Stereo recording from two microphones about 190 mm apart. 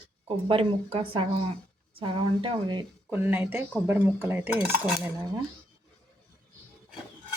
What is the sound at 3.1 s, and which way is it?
Dishes, 10° right (ahead or behind).